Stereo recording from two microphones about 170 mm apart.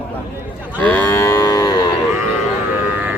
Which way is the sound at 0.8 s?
10° left (ahead or behind).